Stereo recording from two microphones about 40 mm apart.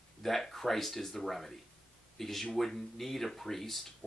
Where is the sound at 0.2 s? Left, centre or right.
Centre.